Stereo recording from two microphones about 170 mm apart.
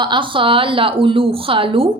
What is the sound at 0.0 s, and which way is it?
A woman's voice, 30° right (ahead or behind).